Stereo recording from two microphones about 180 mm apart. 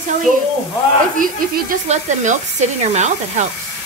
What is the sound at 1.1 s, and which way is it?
Speech, 45° right (ahead or behind).